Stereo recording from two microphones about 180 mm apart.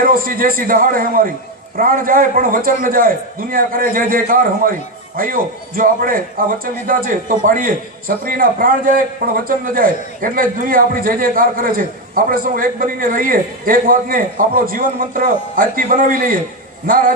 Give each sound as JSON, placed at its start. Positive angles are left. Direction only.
{"t": 0.0, "sound": "a man's voice", "side_deg": -50}